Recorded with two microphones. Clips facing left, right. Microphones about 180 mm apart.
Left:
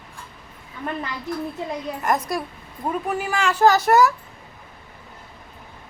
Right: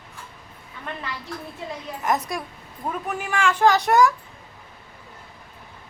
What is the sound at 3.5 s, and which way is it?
Speech, 5° left (ahead or behind).